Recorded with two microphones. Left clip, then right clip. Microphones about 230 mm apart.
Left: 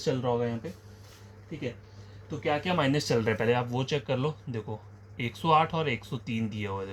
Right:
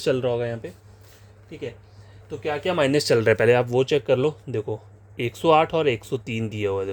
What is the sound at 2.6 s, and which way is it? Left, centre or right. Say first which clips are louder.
A man's voice: right 7 dB; right.